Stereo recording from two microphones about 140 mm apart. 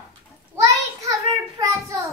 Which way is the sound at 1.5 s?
25° right (ahead or behind).